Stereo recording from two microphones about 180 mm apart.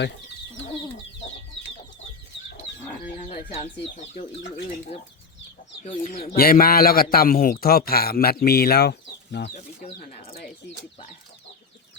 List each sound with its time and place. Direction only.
3.2 s chicken: 40° left (ahead or behind)
3.9 s speech: 40° left (ahead or behind)
6.0 s speech: 50° left (ahead or behind); by 9.5 s 65° left (ahead or behind)
9.8 s speech: 45° left (ahead or behind)